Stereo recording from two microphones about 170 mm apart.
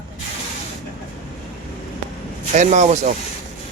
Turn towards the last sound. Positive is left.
turn(degrees=-45)  # may be behind; listen again after turning